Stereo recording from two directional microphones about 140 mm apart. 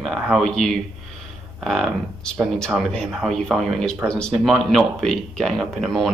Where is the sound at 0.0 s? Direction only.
Centre (ahead or behind).